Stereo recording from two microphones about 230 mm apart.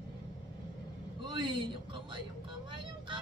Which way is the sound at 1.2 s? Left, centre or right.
Right.